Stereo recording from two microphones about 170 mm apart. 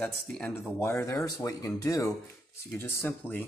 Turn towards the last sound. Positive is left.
turn(degrees=10)  # may be behind; listen again after turning